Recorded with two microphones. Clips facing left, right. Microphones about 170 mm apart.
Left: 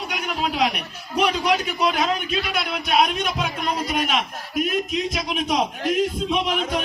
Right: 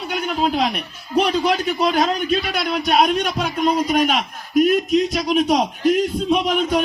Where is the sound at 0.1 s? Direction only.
35° right (ahead or behind).